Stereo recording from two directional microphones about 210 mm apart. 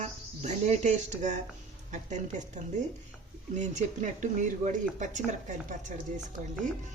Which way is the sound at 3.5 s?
35° right (ahead or behind).